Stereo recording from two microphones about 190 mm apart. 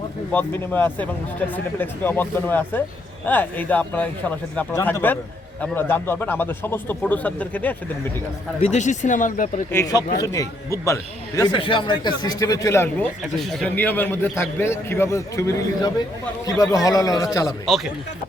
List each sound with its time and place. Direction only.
0.3 s speech: 10° left (ahead or behind)
8.6 s speech: 40° left (ahead or behind)
9.7 s a man's voice: 20° left (ahead or behind)
13.4 s a man's voice: centre (ahead or behind); by 17.5 s 20° left (ahead or behind)